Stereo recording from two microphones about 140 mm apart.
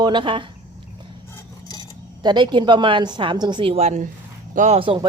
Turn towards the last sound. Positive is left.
turn(degrees=-40)  # may be behind; listen again after turning